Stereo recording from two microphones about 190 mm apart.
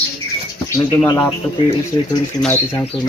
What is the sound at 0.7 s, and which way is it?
Speech, 15° left (ahead or behind).